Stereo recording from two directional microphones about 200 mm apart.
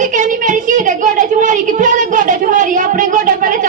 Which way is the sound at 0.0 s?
40° right (ahead or behind).